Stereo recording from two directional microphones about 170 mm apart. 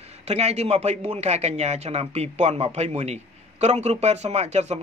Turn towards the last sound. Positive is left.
turn(degrees=-40)  # may be behind; listen again after turning